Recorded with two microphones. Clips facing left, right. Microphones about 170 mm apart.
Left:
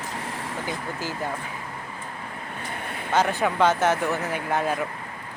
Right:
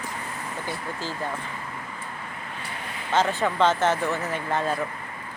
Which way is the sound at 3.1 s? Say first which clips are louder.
Left 1 dB; 15° left (ahead or behind).